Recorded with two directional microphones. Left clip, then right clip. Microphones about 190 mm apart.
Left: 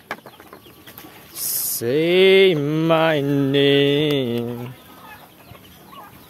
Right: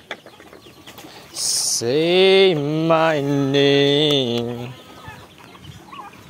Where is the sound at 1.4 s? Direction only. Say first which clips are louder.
Right 7 dB; 20° left (ahead or behind).